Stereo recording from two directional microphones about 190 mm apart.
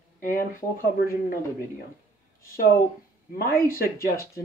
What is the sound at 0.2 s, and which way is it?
Speech, 45° left (ahead or behind).